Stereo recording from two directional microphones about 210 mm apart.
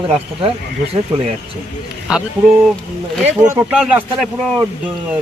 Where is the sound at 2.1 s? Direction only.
5° right (ahead or behind).